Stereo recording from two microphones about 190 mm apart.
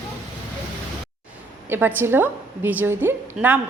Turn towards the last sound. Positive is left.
turn(degrees=-10)  # may be behind; listen again after turning